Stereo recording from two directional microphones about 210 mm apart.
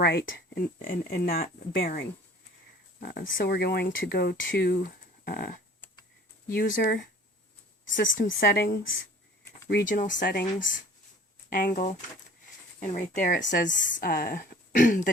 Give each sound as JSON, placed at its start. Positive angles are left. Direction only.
{"t": 0.0, "sound": "speech", "side_deg": 50}
{"t": 7.9, "sound": "a woman's voice", "side_deg": 65}
{"t": 8.4, "sound": "speech", "side_deg": 45}